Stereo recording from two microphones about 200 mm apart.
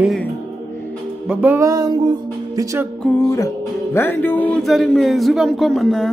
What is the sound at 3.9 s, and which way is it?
Music, 10° left (ahead or behind).